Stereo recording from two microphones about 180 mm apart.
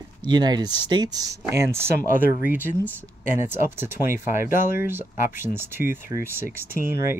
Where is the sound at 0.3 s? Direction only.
20° right (ahead or behind).